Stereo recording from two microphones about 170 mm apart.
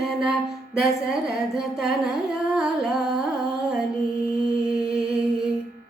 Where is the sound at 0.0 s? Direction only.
5° right (ahead or behind).